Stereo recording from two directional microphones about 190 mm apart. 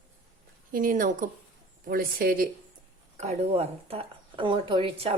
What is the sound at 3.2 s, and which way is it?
Speech, 35° right (ahead or behind).